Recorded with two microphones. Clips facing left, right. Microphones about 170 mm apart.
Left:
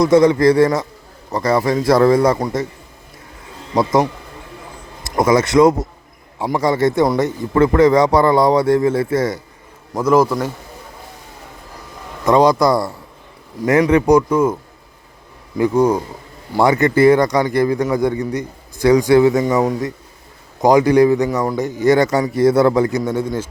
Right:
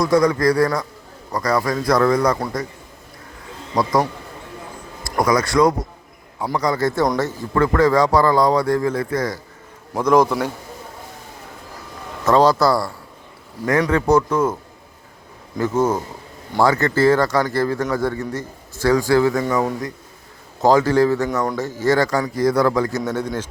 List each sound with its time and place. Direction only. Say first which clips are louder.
0.0 s a man's voice: left 5 dB; 25° left (ahead or behind)
3.8 s a man's voice: left 3 dB; 20° left (ahead or behind)
9.9 s a man's voice: left 1 dB; 5° left (ahead or behind)
12.2 s a man's voice: left 2 dB; 15° left (ahead or behind)
15.5 s a man's voice: left 4 dB; 15° left (ahead or behind)